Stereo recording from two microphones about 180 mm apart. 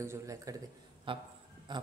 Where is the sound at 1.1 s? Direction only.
30° right (ahead or behind).